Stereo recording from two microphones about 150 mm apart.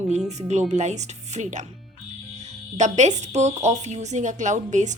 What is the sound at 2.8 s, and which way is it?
A woman's voice, 50° right (ahead or behind).